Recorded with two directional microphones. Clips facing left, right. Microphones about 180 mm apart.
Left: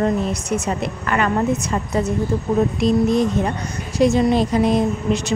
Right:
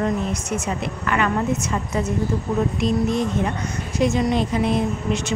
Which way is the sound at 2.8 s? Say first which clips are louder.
Left 4 dB; 35° left (ahead or behind).